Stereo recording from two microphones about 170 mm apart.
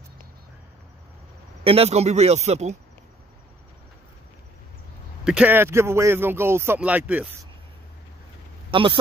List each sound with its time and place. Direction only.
1.6 s speech: 35° right (ahead or behind)
5.2 s speech: 5° right (ahead or behind)
8.6 s speech: 30° right (ahead or behind)